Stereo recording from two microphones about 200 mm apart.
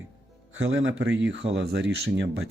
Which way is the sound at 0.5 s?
75° right (ahead or behind).